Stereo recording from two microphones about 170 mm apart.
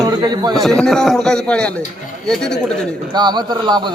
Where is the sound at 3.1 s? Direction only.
25° right (ahead or behind).